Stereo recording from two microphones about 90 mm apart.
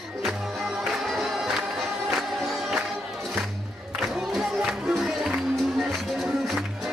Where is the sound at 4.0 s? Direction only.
5° right (ahead or behind).